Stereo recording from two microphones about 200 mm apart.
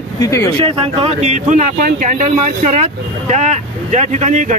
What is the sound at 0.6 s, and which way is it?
Speech, 30° right (ahead or behind).